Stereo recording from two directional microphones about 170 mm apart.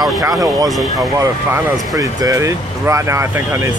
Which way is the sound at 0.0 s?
20° right (ahead or behind).